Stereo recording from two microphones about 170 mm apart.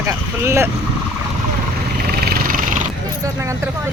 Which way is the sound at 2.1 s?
65° right (ahead or behind).